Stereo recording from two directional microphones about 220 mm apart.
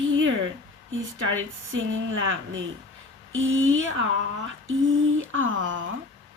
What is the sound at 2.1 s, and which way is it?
A woman's voice, 60° right (ahead or behind).